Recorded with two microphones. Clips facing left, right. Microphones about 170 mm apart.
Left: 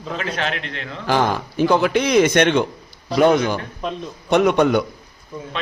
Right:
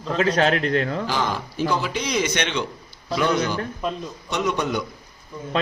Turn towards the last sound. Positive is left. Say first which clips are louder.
# left 8 dB
turn(degrees=60)  # may be behind; listen again after turning